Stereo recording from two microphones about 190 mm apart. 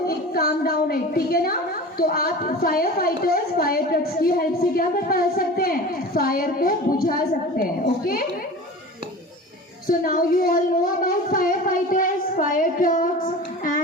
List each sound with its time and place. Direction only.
0.0 s a woman's voice: 55° left (ahead or behind)
9.8 s a woman's voice: 50° left (ahead or behind)